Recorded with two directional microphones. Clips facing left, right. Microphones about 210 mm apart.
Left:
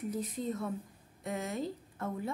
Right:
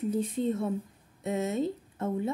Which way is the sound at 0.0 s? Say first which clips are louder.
Right 7 dB; 25° right (ahead or behind).